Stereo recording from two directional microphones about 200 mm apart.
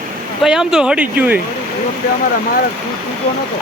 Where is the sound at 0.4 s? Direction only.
5° right (ahead or behind).